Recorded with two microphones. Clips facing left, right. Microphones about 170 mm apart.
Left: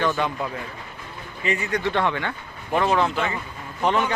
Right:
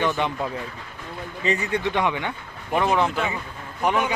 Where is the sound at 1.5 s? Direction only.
35° right (ahead or behind).